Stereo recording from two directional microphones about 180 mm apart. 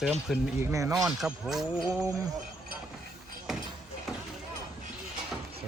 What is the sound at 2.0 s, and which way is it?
Speech, 15° right (ahead or behind).